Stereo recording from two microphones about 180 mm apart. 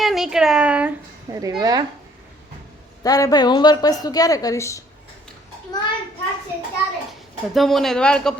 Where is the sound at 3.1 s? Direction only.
20° left (ahead or behind).